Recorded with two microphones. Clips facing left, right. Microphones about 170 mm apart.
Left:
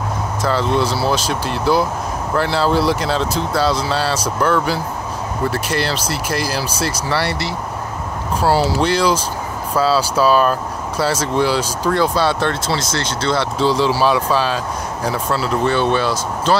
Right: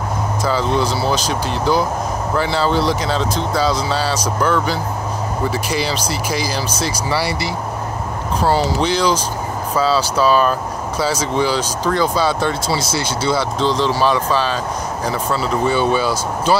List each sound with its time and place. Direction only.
0.4 s speech: centre (ahead or behind)